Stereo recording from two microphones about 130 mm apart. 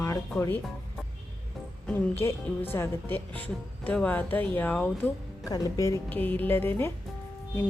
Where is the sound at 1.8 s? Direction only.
20° left (ahead or behind).